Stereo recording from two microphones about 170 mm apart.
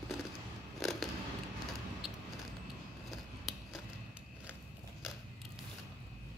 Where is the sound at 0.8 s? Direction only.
Centre (ahead or behind).